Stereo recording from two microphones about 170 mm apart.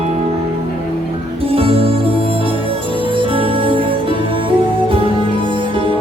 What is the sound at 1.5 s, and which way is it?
Music, 35° right (ahead or behind).